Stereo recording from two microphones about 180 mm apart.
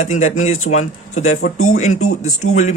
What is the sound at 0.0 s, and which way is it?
Speech, 40° left (ahead or behind).